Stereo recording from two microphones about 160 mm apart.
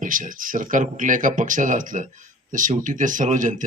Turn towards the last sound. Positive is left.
turn(degrees=-50)  # may be behind; listen again after turning